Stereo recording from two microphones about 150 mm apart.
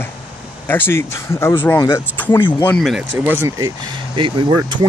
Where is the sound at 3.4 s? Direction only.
25° right (ahead or behind).